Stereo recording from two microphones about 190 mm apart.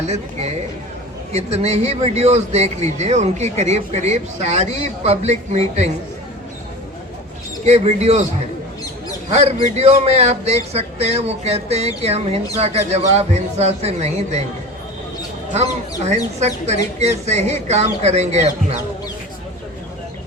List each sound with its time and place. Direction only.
0.1 s speech: 35° right (ahead or behind)
7.6 s speech: 35° right (ahead or behind)
9.3 s speech: 35° right (ahead or behind)
15.5 s speech: 35° right (ahead or behind)